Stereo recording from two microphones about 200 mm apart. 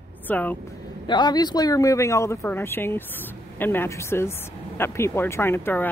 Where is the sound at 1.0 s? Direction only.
20° left (ahead or behind).